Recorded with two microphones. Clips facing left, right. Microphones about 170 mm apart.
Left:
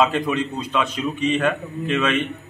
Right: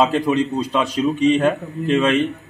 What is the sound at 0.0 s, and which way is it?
A man's voice, 35° right (ahead or behind).